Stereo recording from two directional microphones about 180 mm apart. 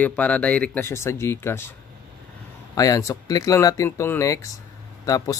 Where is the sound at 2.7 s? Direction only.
20° left (ahead or behind).